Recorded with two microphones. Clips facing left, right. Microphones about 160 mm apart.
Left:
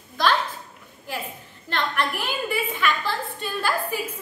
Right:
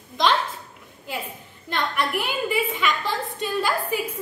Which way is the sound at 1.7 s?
15° right (ahead or behind).